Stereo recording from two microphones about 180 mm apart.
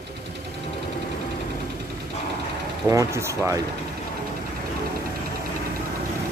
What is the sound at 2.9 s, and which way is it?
Speech, 15° right (ahead or behind).